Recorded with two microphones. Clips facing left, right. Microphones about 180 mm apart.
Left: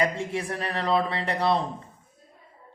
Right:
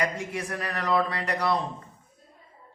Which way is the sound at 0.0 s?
25° left (ahead or behind).